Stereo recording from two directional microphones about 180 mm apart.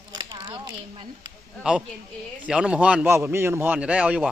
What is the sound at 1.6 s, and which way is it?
A man's voice, 5° right (ahead or behind).